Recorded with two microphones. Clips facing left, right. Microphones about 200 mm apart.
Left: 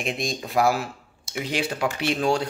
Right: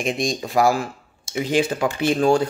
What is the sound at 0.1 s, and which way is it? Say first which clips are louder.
A man's voice: right 3 dB; centre (ahead or behind).